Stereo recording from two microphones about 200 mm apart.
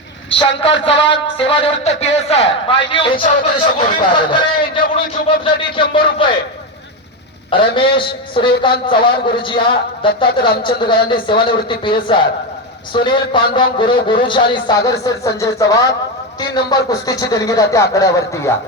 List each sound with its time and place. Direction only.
0.3 s a man's voice: 25° left (ahead or behind)
7.5 s a man's voice: 25° left (ahead or behind)